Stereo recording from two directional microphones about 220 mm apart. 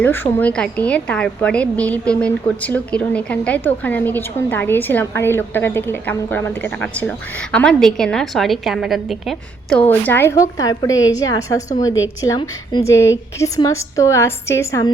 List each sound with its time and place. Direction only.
0.0 s a woman's voice: 10° left (ahead or behind)